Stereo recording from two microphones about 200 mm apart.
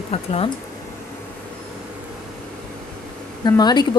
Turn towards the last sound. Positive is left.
turn(degrees=20)  # may be behind; listen again after turning